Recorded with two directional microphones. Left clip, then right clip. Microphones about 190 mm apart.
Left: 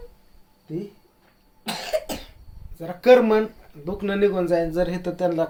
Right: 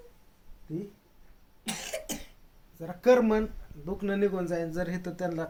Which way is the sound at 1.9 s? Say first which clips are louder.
Left 16 dB; 35° left (ahead or behind).